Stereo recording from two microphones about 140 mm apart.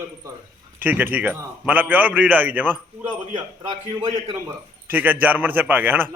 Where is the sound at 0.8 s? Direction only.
10° right (ahead or behind).